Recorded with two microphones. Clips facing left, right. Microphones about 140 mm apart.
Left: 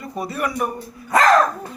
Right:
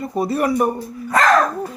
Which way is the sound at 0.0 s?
30° right (ahead or behind).